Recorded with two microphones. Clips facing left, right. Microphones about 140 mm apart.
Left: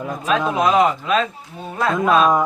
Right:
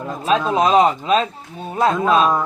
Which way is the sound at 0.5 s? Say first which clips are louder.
Right 2 dB; 25° right (ahead or behind).